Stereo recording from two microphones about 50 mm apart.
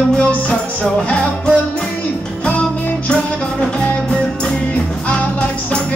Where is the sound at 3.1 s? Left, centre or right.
Left.